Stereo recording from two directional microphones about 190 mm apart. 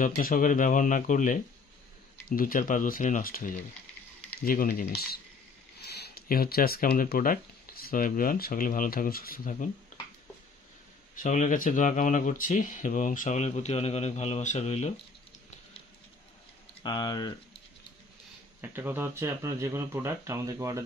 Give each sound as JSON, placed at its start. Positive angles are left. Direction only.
{"t": 0.0, "sound": "speech", "side_deg": 50}
{"t": 11.1, "sound": "speech", "side_deg": 40}
{"t": 16.8, "sound": "speech", "side_deg": 25}
{"t": 18.6, "sound": "speech", "side_deg": -10}